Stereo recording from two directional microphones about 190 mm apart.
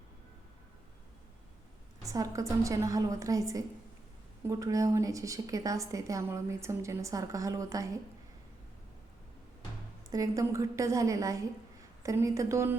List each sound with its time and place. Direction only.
2.0 s a woman's voice: 15° right (ahead or behind)
10.1 s a woman's voice: 15° right (ahead or behind)